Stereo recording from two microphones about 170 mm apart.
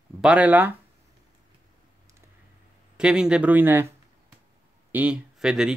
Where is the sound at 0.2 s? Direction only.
5° right (ahead or behind).